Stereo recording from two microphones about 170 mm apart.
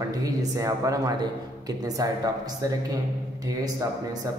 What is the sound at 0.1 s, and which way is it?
A man's voice, 20° right (ahead or behind).